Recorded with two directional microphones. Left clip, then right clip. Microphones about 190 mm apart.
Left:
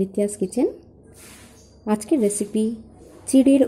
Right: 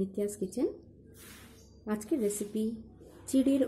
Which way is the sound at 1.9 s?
20° left (ahead or behind).